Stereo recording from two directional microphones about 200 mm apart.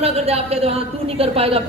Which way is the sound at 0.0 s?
30° right (ahead or behind).